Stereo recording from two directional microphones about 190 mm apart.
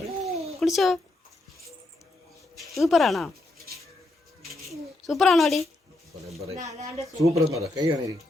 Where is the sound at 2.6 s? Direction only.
Centre (ahead or behind).